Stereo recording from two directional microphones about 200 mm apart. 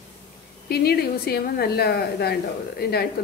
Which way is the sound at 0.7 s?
50° left (ahead or behind).